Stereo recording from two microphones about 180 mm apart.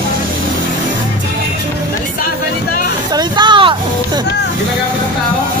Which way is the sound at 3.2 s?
25° right (ahead or behind).